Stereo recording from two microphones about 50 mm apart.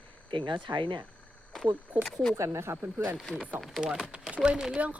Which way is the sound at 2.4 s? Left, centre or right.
Right.